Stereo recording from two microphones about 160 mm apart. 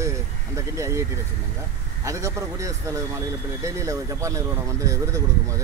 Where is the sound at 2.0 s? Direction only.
20° right (ahead or behind).